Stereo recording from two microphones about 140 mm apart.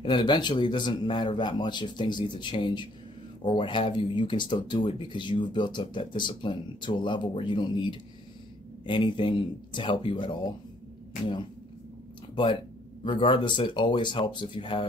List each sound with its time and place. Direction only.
0.0 s speech: 35° left (ahead or behind)
13.0 s speech: 35° left (ahead or behind)